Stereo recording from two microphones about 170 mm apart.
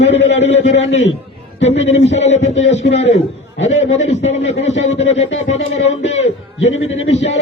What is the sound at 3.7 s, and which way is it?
A man's voice, 40° left (ahead or behind).